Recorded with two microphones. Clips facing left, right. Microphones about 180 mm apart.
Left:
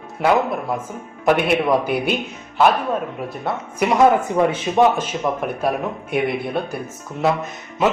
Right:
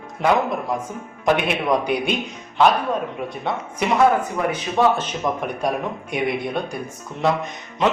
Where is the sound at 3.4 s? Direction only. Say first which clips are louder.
Left 3 dB; 10° left (ahead or behind).